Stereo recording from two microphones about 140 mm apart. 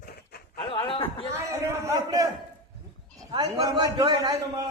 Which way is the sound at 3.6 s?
25° right (ahead or behind).